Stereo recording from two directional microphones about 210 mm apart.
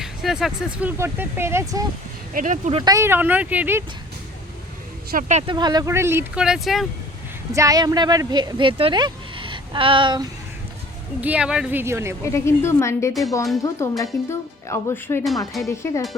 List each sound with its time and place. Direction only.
0.0 s speech: centre (ahead or behind)
2.3 s speech: 40° right (ahead or behind)
2.8 s speech: 15° right (ahead or behind)
5.1 s speech: 30° right (ahead or behind); by 6.8 s centre (ahead or behind)
7.5 s speech: 15° right (ahead or behind)
11.2 s speech: 5° right (ahead or behind)
12.2 s speech: 15° left (ahead or behind)